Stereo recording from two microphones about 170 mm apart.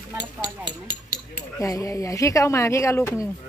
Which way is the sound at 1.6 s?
20° left (ahead or behind).